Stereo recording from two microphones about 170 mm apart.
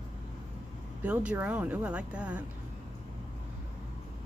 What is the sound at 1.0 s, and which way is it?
Speech, 5° right (ahead or behind).